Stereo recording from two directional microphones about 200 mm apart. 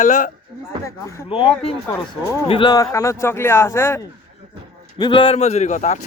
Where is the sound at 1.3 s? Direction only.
30° left (ahead or behind); by 4.0 s 15° left (ahead or behind).